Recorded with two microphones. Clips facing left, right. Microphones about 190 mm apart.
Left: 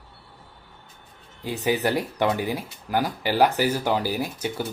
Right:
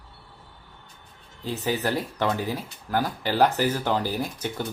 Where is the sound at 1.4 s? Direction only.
15° left (ahead or behind).